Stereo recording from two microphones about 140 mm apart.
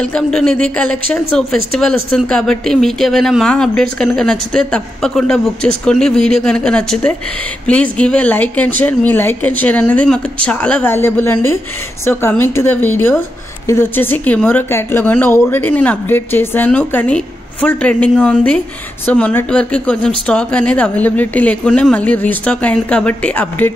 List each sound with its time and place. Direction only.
0.0 s a woman's voice: 5° left (ahead or behind)